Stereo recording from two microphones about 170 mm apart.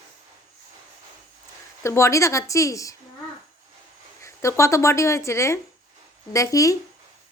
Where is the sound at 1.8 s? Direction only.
15° left (ahead or behind).